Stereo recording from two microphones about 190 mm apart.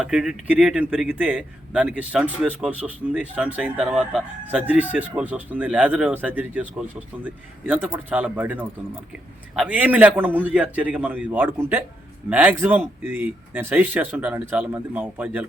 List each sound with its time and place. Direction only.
0.0 s a man's voice: 5° right (ahead or behind)